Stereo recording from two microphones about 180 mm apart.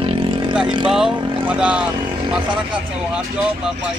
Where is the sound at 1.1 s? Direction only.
25° right (ahead or behind).